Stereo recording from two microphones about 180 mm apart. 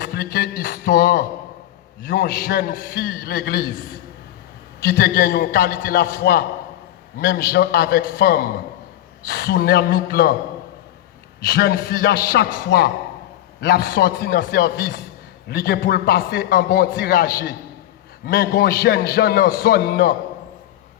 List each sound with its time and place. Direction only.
0.0 s a sound: 55° left (ahead or behind)
2.0 s a man's voice: 55° left (ahead or behind)
4.9 s a man's voice: 55° left (ahead or behind)
11.4 s a man's voice: 55° left (ahead or behind)
12.7 s speech: 75° left (ahead or behind)
13.6 s a man's voice: 60° left (ahead or behind)